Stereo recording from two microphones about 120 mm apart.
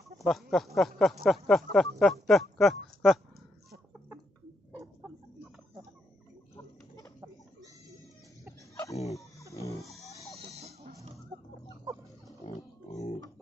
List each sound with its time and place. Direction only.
0.2 s speech: centre (ahead or behind)
9.5 s music: 25° left (ahead or behind)
9.8 s music: centre (ahead or behind)
10.5 s music: 60° right (ahead or behind)
12.4 s pig: 60° left (ahead or behind)